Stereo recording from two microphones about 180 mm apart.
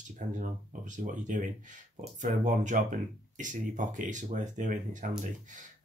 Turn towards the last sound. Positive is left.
turn(degrees=-45)  # may be behind; listen again after turning